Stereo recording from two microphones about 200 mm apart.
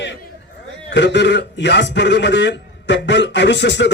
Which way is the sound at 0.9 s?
60° left (ahead or behind).